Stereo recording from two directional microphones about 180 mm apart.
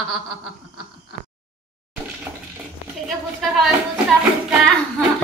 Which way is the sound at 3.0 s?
Centre (ahead or behind).